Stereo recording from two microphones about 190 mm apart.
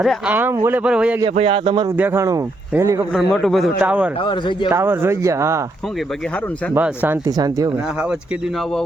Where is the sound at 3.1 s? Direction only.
Centre (ahead or behind).